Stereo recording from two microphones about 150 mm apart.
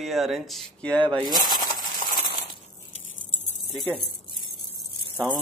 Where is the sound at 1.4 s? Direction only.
30° left (ahead or behind).